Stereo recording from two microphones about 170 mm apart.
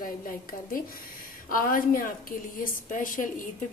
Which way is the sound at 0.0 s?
55° left (ahead or behind).